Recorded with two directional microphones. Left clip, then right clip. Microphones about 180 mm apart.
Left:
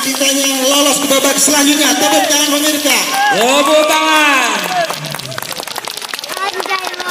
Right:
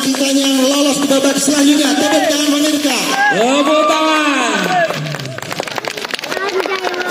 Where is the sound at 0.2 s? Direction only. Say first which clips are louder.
Left 1 dB; 25° right (ahead or behind).